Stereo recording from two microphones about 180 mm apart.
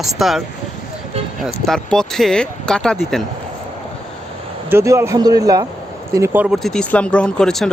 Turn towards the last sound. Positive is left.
turn(degrees=5)  # may be behind; listen again after turning